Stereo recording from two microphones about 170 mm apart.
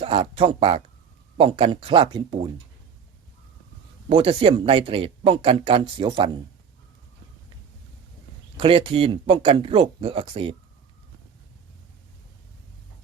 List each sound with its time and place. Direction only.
0.0 s speech: 35° right (ahead or behind)
4.1 s speech: 30° right (ahead or behind)
8.5 s speech: 30° right (ahead or behind)